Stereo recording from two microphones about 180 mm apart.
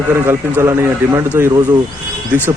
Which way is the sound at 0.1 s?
15° right (ahead or behind).